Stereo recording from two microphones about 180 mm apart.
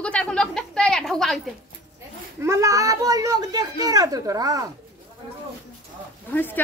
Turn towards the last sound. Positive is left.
turn(degrees=10)  # may be behind; listen again after turning